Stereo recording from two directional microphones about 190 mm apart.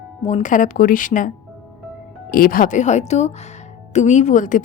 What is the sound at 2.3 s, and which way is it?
A woman's voice, 50° left (ahead or behind).